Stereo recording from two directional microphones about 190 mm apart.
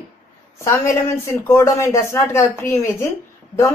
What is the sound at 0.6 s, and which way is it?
A woman's voice, 15° left (ahead or behind).